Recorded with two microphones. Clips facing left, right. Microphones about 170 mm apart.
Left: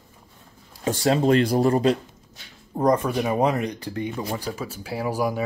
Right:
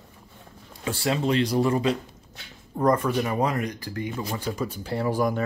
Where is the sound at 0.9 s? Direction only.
40° left (ahead or behind).